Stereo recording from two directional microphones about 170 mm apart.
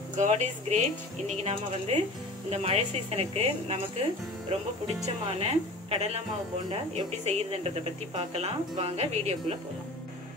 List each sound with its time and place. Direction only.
0.2 s speech: 45° right (ahead or behind)